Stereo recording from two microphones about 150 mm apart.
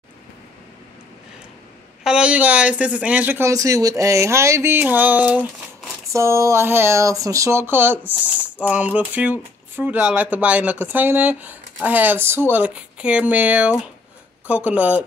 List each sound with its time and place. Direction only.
2.0 s speech: 5° right (ahead or behind)